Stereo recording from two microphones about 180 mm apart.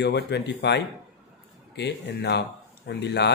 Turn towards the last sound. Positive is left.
turn(degrees=70)  # may be behind; listen again after turning